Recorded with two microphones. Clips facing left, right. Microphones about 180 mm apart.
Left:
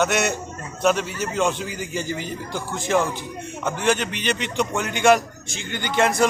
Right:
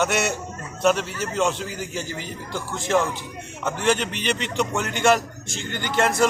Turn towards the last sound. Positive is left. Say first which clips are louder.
# left 1 dB
turn(degrees=-5)  # may be behind; listen again after turning